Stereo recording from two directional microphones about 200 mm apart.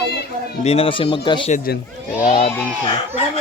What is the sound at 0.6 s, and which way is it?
Speech, 30° left (ahead or behind).